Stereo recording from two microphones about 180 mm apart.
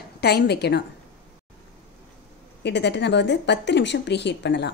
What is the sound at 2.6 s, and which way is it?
A woman's voice, 75° left (ahead or behind).